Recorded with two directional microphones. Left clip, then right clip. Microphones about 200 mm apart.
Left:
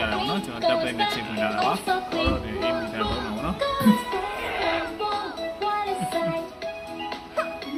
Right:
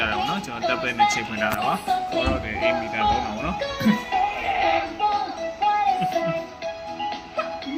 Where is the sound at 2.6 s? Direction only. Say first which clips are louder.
Right 5 dB; 5° left (ahead or behind).